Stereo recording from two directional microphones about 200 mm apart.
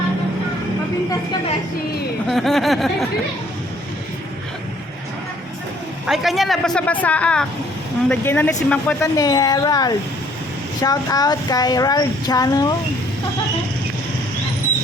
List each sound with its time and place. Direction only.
2.3 s a woman's voice: centre (ahead or behind)
6.1 s a woman's voice: centre (ahead or behind)
9.1 s speech: 20° left (ahead or behind)